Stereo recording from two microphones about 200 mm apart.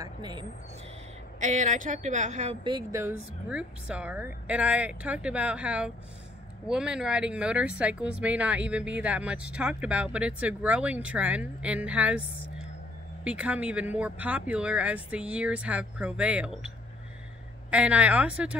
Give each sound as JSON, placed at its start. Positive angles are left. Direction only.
{"t": 0.0, "sound": "speech", "side_deg": -20}
{"t": 1.4, "sound": "a woman's voice", "side_deg": -40}
{"t": 2.6, "sound": "speech", "side_deg": -15}